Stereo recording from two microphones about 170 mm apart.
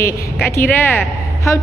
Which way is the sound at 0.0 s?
15° left (ahead or behind).